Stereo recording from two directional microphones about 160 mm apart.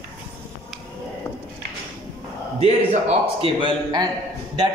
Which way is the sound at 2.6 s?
40° right (ahead or behind).